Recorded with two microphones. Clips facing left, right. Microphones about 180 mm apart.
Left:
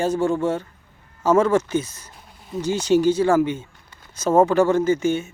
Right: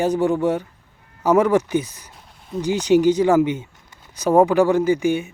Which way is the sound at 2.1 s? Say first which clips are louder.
Right 1 dB; centre (ahead or behind).